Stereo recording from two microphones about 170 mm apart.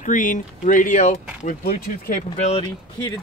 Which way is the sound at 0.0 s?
50° left (ahead or behind).